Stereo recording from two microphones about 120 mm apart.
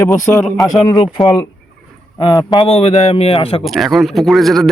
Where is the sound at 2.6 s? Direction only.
55° left (ahead or behind).